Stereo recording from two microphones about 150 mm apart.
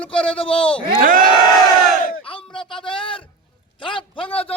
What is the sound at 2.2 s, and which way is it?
A man's voice, 35° left (ahead or behind).